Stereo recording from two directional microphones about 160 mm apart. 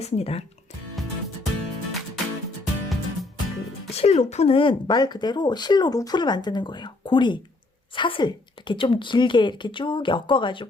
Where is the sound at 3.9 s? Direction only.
40° left (ahead or behind).